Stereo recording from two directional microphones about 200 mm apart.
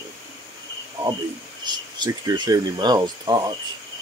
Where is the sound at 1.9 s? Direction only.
20° right (ahead or behind).